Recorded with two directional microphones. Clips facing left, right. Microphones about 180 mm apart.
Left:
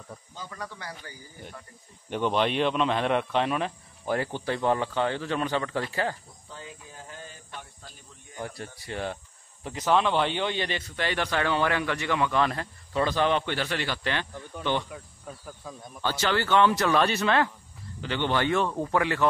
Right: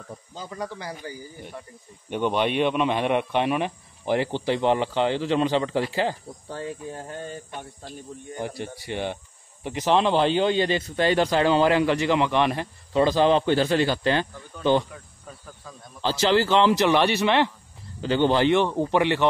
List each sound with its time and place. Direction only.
0.4 s speech: 25° right (ahead or behind)
2.1 s speech: 10° right (ahead or behind)
4.0 s speech: 25° right (ahead or behind)
6.5 s speech: 60° right (ahead or behind)
8.8 s speech: 20° right (ahead or behind)
13.0 s a man's voice: 30° right (ahead or behind)
14.9 s insect: 10° left (ahead or behind)
16.1 s speech: 30° right (ahead or behind)
18.0 s speech: 35° right (ahead or behind)